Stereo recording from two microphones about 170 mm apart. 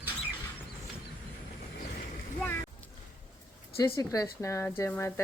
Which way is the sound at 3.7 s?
20° left (ahead or behind).